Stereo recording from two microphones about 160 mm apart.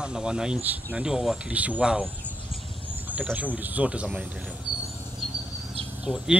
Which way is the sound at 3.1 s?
10° right (ahead or behind).